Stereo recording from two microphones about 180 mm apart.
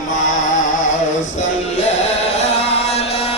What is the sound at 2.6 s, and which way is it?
Music, 35° left (ahead or behind).